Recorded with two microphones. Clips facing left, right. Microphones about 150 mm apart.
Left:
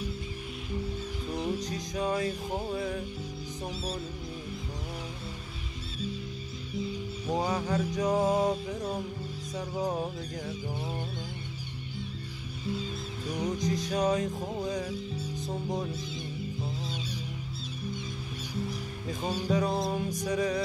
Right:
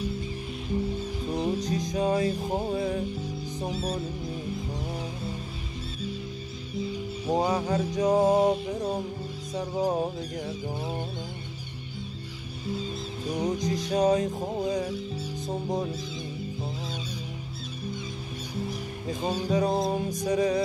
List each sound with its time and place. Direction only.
1.2 s music: 25° right (ahead or behind)
3.7 s music: 50° right (ahead or behind)
4.7 s music: 30° right (ahead or behind)
7.2 s music: 30° right (ahead or behind)
13.3 s music: 25° right (ahead or behind)
19.5 s music: 30° right (ahead or behind)